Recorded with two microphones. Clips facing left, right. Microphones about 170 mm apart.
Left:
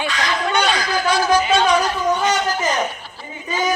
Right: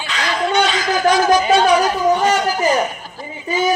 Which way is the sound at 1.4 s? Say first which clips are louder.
Right 3 dB; 40° right (ahead or behind).